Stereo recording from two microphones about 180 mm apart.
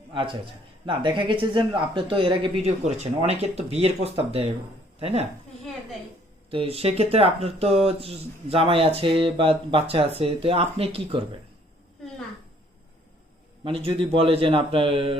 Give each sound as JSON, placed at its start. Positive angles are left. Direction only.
{"t": 0.1, "sound": "a man's voice", "side_deg": -25}
{"t": 6.5, "sound": "speech", "side_deg": -30}
{"t": 13.7, "sound": "speech", "side_deg": -30}